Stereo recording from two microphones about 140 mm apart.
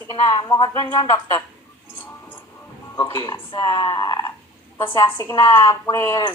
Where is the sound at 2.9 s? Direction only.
25° left (ahead or behind).